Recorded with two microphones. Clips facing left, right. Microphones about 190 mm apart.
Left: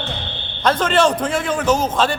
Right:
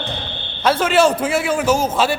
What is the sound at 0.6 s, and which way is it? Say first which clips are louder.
A man's voice: right 1 dB; 10° right (ahead or behind).